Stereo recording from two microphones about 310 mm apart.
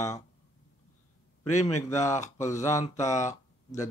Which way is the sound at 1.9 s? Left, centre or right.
Centre.